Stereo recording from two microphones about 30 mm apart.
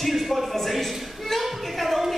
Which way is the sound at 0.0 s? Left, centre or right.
Centre.